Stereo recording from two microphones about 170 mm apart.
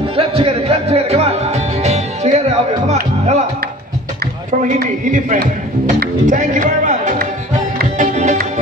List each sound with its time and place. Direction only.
0.1 s music: 35° right (ahead or behind)
4.7 s a man's voice: 55° right (ahead or behind)
5.9 s music: 50° right (ahead or behind)